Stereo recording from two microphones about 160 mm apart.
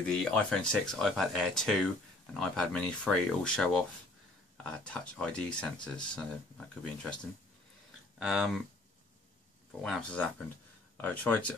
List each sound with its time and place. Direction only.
0.0 s speech: 5° left (ahead or behind)
8.2 s speech: centre (ahead or behind)
9.7 s speech: centre (ahead or behind)